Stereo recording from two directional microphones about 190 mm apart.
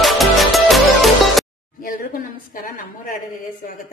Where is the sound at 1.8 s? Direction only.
50° left (ahead or behind).